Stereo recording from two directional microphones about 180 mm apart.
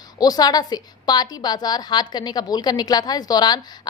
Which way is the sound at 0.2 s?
20° left (ahead or behind).